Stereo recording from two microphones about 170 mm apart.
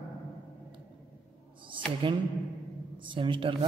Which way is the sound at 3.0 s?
30° right (ahead or behind).